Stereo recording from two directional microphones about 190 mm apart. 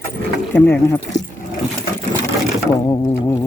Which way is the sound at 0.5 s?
10° left (ahead or behind).